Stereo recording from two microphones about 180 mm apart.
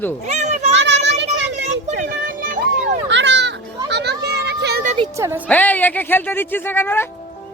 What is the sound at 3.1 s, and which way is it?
Children playing, 80° right.